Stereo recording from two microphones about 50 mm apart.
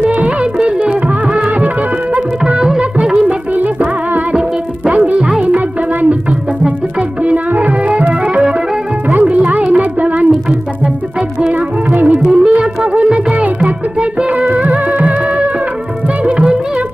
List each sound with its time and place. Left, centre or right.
0.0 s music: right
4.8 s music: right
7.2 s music: right
11.9 s music: right